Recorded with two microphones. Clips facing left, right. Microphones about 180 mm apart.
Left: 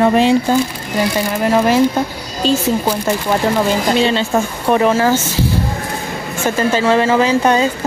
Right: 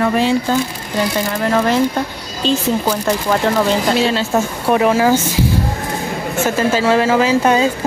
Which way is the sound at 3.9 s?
Centre (ahead or behind).